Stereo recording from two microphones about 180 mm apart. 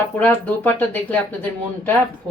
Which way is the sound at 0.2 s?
10° left (ahead or behind).